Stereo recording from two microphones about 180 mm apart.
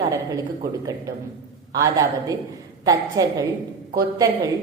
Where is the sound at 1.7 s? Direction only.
20° right (ahead or behind).